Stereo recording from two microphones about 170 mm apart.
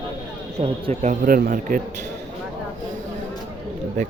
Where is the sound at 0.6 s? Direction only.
35° right (ahead or behind).